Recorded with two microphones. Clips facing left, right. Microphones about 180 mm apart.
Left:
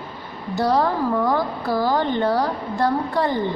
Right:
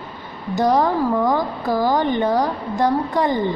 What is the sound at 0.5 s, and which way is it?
A woman's voice, 15° right (ahead or behind).